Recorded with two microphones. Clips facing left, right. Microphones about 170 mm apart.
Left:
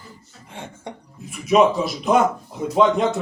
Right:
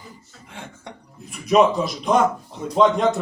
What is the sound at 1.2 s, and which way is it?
A man's voice, centre (ahead or behind).